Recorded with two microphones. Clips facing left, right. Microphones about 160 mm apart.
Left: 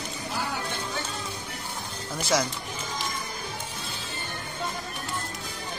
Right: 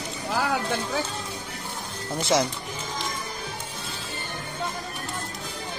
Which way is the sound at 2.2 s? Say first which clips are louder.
Right 3 dB; 25° right (ahead or behind).